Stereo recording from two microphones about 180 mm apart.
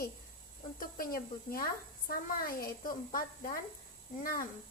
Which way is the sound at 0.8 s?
55° left (ahead or behind).